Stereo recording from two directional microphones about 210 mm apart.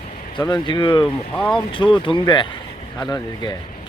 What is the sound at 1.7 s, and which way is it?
Speech, 25° left (ahead or behind).